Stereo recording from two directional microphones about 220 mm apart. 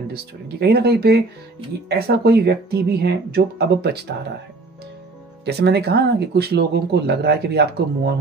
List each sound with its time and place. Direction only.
0.1 s speech: 45° right (ahead or behind)
5.4 s speech: 50° right (ahead or behind)